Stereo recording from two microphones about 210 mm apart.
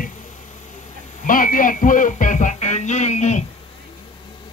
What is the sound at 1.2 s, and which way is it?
Speech, 40° left (ahead or behind).